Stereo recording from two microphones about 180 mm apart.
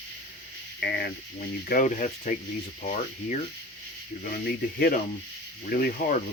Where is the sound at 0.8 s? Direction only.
65° left (ahead or behind).